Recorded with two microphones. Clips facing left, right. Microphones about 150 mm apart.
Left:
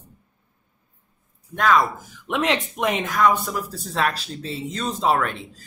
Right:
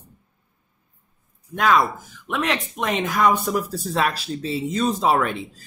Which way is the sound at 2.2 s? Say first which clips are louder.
Left 2 dB; 20° left (ahead or behind).